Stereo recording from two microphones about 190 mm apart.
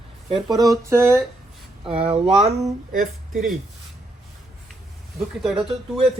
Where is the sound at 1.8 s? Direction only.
30° right (ahead or behind).